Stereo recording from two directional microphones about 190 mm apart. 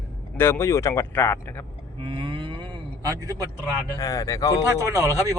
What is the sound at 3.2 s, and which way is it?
Speech, 20° right (ahead or behind).